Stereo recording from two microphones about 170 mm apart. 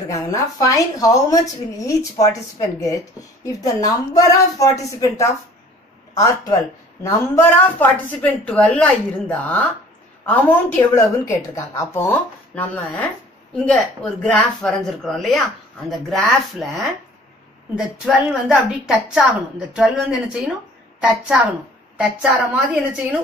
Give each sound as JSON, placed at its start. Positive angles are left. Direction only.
{"t": 0.1, "sound": "a woman's voice", "side_deg": 20}
{"t": 3.6, "sound": "a woman's voice", "side_deg": 20}
{"t": 7.0, "sound": "a woman's voice", "side_deg": 15}